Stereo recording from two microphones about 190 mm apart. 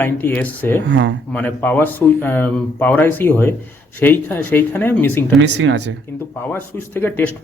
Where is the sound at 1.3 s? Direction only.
10° left (ahead or behind).